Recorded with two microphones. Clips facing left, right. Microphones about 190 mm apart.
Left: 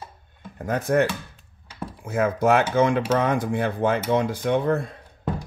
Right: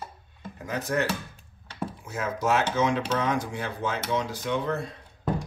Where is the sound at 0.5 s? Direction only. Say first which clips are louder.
Left 7 dB; 55° left (ahead or behind).